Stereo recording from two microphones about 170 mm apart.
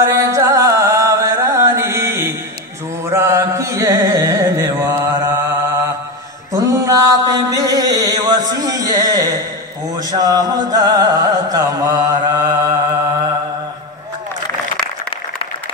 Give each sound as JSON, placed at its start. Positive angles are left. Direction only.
{"t": 0.3, "sound": "chant", "side_deg": -15}
{"t": 3.1, "sound": "carnatic music", "side_deg": -15}
{"t": 6.5, "sound": "mantra", "side_deg": -20}
{"t": 9.9, "sound": "music", "side_deg": -20}